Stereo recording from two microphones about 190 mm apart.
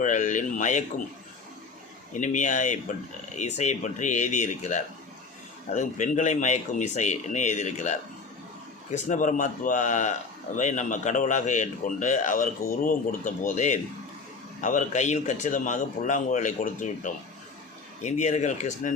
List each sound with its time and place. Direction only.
0.0 s a man's voice: 40° left (ahead or behind)
2.2 s a man's voice: 40° left (ahead or behind)